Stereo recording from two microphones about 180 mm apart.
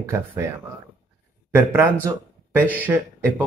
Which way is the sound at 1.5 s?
10° right (ahead or behind).